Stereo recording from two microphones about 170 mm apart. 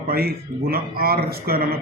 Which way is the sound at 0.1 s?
65° right (ahead or behind).